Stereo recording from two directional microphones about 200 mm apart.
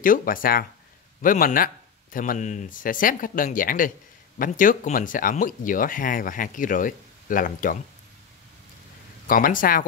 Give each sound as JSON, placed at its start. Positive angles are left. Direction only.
{"t": 0.0, "sound": "speech", "side_deg": 45}
{"t": 9.3, "sound": "speech", "side_deg": 45}